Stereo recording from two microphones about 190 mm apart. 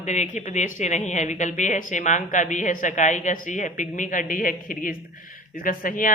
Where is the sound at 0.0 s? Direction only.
35° left (ahead or behind).